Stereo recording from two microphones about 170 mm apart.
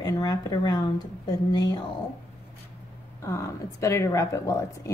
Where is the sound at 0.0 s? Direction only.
25° left (ahead or behind).